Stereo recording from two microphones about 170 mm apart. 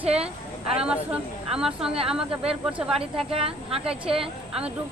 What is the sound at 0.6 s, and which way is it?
Speech, 5° right (ahead or behind).